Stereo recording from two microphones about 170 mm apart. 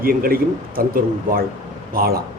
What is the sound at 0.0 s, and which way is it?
Speech, 60° right (ahead or behind).